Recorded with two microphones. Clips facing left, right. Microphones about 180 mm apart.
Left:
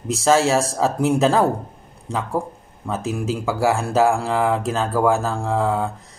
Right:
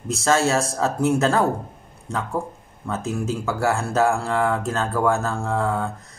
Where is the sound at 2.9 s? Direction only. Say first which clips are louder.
Left 2 dB; 15° left (ahead or behind).